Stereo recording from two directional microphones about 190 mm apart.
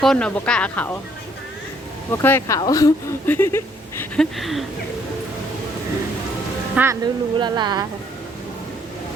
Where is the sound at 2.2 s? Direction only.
10° left (ahead or behind).